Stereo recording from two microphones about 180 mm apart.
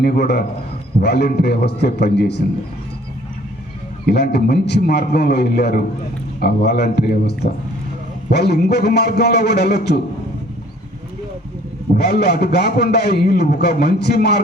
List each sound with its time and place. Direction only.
0.0 s a man's voice: 65° left (ahead or behind)
4.0 s a man's voice: 65° left (ahead or behind)
11.9 s a man's voice: 65° left (ahead or behind)